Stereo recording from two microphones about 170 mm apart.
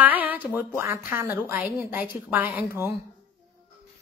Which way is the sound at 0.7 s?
15° right (ahead or behind).